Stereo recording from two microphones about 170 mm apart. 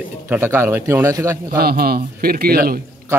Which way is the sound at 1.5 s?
65° right (ahead or behind).